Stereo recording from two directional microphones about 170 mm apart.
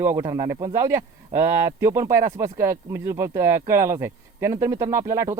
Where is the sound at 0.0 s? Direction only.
15° right (ahead or behind).